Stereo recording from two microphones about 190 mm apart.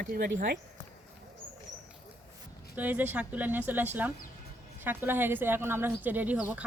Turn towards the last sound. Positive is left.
turn(degrees=-5)  # may be behind; listen again after turning